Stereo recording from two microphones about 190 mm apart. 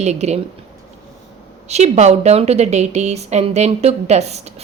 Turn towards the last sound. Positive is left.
turn(degrees=-35)  # may be behind; listen again after turning